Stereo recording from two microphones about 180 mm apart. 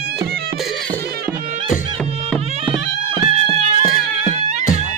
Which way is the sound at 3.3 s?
35° right (ahead or behind).